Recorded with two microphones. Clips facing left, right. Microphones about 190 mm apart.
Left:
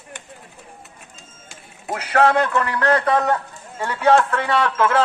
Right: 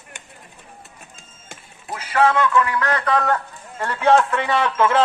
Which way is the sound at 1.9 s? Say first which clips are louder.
Left 2 dB; 65° left (ahead or behind).